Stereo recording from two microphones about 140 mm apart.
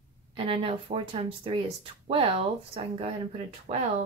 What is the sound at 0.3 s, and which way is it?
A woman's voice, 40° right (ahead or behind).